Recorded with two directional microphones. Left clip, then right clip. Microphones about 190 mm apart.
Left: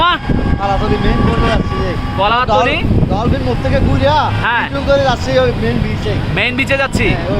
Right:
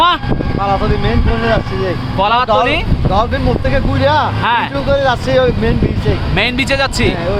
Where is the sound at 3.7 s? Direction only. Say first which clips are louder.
Left 1 dB; 40° right (ahead or behind).